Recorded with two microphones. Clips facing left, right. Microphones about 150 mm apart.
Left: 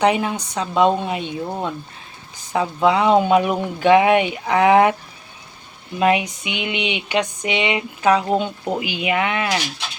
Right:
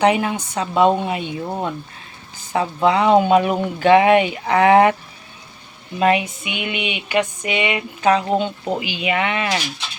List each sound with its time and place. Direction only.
0.0 s speech: centre (ahead or behind)
6.0 s a sound: 10° left (ahead or behind)
8.0 s speech: 10° left (ahead or behind)